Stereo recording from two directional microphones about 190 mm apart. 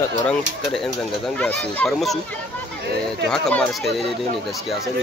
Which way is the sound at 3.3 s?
5° left (ahead or behind).